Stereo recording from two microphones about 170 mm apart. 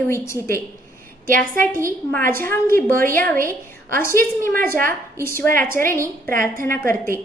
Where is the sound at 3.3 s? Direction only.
55° right (ahead or behind).